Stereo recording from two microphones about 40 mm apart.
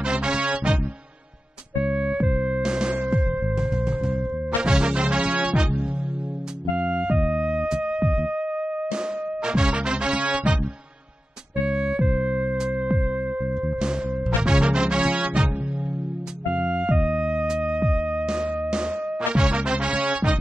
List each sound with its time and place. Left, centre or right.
0.0 s music: right
1.9 s music: right
3.1 s music: right
11.6 s music: right
16.5 s music: right